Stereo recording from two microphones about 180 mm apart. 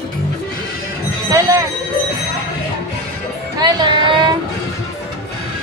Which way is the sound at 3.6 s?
25° right (ahead or behind).